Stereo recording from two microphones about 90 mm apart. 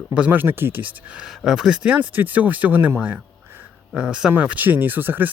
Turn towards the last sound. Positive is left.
turn(degrees=-20)  # may be behind; listen again after turning